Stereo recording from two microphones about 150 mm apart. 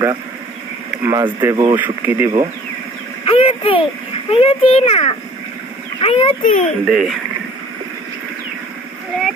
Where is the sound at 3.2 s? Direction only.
40° left (ahead or behind).